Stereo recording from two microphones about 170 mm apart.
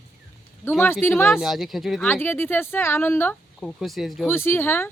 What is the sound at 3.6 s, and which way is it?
Speech, centre (ahead or behind).